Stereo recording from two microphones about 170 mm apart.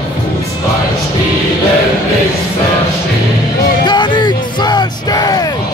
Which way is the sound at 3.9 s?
25° left (ahead or behind).